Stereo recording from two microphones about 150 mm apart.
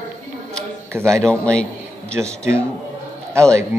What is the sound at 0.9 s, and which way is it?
Speech, 15° right (ahead or behind).